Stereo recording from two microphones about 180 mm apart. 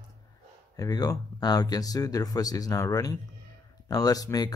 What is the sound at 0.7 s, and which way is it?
Speech, 20° left (ahead or behind).